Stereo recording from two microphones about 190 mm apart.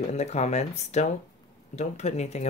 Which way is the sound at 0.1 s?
35° left (ahead or behind).